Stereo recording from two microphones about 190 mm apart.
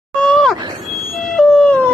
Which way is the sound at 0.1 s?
5° left (ahead or behind).